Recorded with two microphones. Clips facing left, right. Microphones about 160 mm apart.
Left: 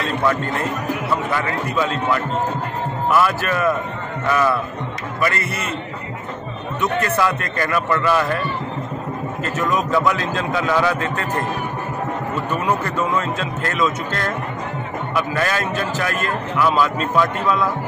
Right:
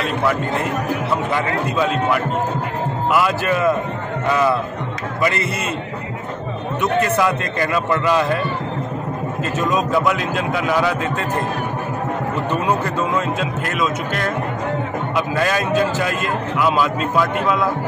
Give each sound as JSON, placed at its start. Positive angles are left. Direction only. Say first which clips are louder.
{"t": 1.1, "sound": "a man's voice", "louder": "right 1 dB", "side_deg": -15}
{"t": 6.8, "sound": "a man's voice", "louder": "right 2 dB", "side_deg": -20}
{"t": 9.4, "sound": "a man's voice", "louder": "right 1 dB", "side_deg": -20}